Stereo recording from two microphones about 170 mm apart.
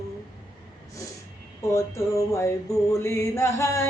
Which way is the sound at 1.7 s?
15° left (ahead or behind).